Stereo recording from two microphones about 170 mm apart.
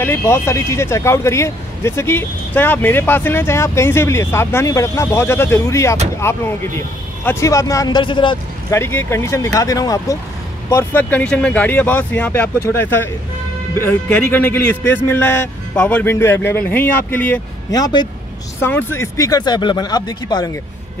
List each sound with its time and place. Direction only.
0.0 s speech: 15° left (ahead or behind)
8.7 s speech: 15° left (ahead or behind)
17.7 s speech: 20° left (ahead or behind)
18.6 s speech: 10° left (ahead or behind)